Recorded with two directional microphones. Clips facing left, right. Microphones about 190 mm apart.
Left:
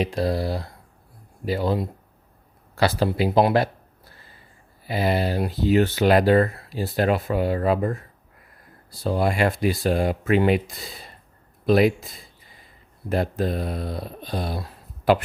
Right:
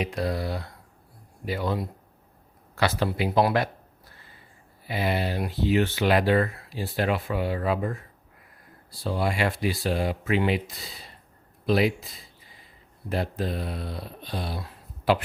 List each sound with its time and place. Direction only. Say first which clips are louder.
0.0 s speech: left 5 dB; 35° left (ahead or behind)
4.9 s speech: left 4 dB; 40° left (ahead or behind)